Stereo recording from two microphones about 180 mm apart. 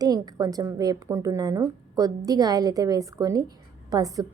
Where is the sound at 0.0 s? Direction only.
20° right (ahead or behind).